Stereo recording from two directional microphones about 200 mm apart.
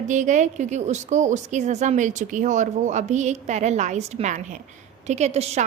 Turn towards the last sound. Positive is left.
turn(degrees=-30)  # may be behind; listen again after turning